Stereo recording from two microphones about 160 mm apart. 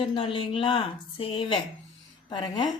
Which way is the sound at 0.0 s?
35° left (ahead or behind).